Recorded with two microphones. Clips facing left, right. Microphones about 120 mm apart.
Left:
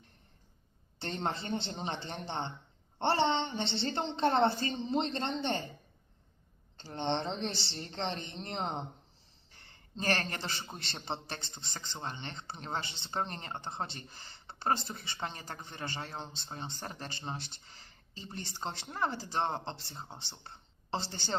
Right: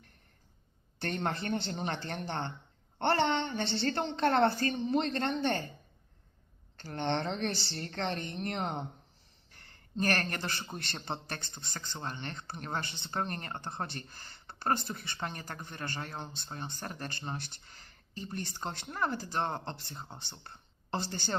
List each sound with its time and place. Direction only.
0.9 s speech: 20° left (ahead or behind)
6.7 s speech: 20° left (ahead or behind)
10.0 s speech: 20° left (ahead or behind)